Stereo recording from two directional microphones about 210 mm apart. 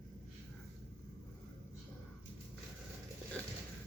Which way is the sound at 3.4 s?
5° left (ahead or behind).